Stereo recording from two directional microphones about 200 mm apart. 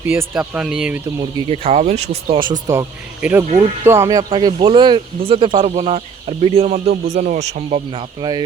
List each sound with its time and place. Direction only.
0.0 s speech: 10° right (ahead or behind)
1.5 s speech: 35° right (ahead or behind)
3.2 s speech: 10° right (ahead or behind); by 8.0 s 35° right (ahead or behind)
8.2 s speech: 20° right (ahead or behind)